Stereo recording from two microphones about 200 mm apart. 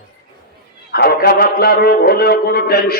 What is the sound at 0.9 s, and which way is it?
A man's voice, 50° left (ahead or behind).